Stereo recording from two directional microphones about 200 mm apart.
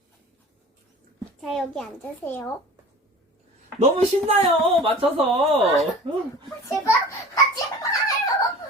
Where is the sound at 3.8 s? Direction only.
35° right (ahead or behind).